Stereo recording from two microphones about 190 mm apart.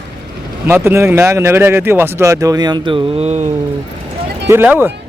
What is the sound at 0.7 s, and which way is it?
Speech, 15° right (ahead or behind).